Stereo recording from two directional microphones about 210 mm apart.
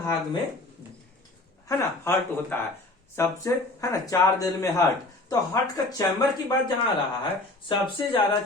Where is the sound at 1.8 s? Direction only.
10° left (ahead or behind).